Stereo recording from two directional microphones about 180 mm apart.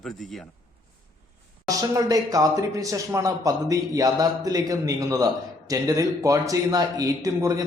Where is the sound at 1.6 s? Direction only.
20° right (ahead or behind).